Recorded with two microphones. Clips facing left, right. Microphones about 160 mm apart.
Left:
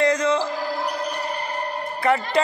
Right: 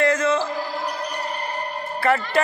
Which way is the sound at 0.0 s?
20° left (ahead or behind).